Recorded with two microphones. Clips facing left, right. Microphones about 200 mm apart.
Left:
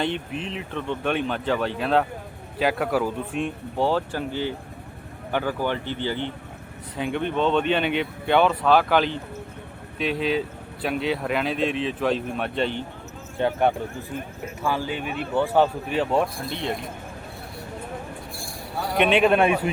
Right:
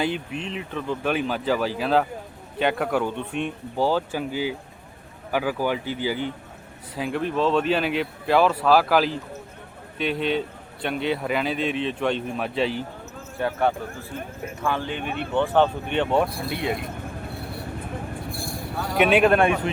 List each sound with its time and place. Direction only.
0.0 s a man's voice: centre (ahead or behind)
13.4 s speech: 20° left (ahead or behind)
14.6 s speech: 5° left (ahead or behind); by 16.7 s 10° right (ahead or behind)
18.9 s speech: 5° right (ahead or behind)